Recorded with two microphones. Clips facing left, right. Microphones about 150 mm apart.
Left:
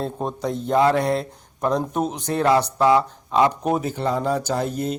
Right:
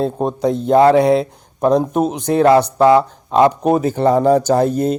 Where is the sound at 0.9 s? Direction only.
70° right (ahead or behind).